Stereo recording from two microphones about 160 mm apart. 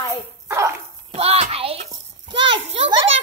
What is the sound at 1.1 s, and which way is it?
A child's voice, 40° right (ahead or behind).